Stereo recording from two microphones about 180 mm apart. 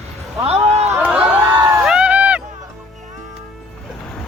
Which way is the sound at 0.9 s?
5° right (ahead or behind).